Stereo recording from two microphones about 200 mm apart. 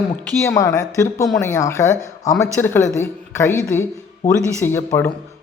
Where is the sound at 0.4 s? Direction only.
15° left (ahead or behind).